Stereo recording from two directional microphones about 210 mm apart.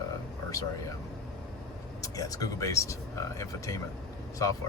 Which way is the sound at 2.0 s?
15° left (ahead or behind).